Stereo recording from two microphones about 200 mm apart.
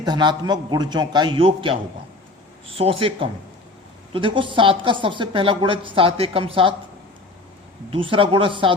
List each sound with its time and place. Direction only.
0.0 s a woman's voice: 20° right (ahead or behind)
7.9 s a woman's voice: 25° right (ahead or behind)